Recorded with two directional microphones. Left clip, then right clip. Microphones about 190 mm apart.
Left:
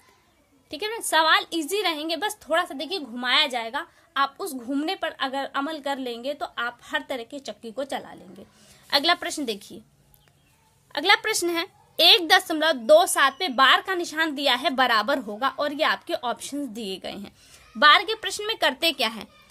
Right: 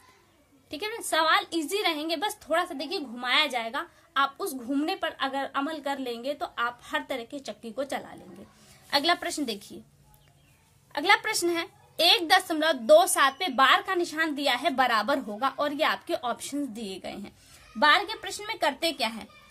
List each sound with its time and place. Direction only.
0.7 s a woman's voice: 35° left (ahead or behind)
10.9 s a woman's voice: 35° left (ahead or behind)